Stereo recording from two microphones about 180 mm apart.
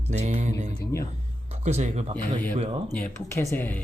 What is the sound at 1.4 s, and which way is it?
Speech, 40° right (ahead or behind).